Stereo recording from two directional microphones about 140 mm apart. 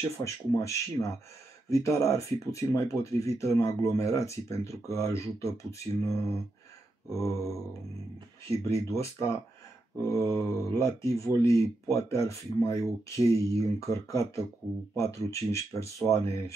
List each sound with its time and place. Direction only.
0.2 s speech: 20° left (ahead or behind)
8.6 s speech: 20° left (ahead or behind)